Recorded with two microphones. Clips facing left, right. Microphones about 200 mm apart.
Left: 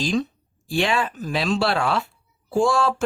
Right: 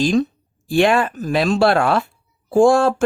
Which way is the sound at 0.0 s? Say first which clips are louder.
Right 6 dB; 50° right (ahead or behind).